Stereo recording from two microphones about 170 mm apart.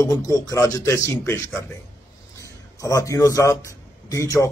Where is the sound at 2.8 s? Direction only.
20° left (ahead or behind).